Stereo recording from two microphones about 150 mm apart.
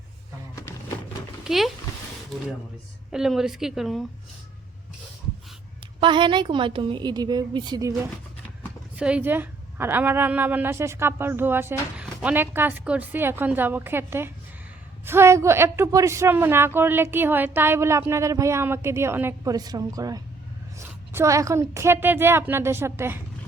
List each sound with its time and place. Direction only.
1.5 s speech: centre (ahead or behind)
3.1 s a woman's voice: 5° right (ahead or behind)
6.0 s a woman's voice: 30° right (ahead or behind)
9.0 s a woman's voice: 5° right (ahead or behind)